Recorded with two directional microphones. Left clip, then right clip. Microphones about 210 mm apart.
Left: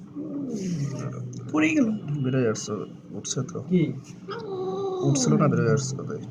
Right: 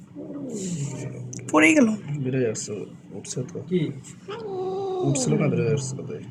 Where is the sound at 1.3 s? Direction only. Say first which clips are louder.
Right 6 dB; 55° right (ahead or behind).